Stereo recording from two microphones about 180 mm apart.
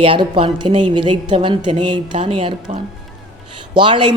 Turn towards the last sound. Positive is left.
turn(degrees=-30)  # may be behind; listen again after turning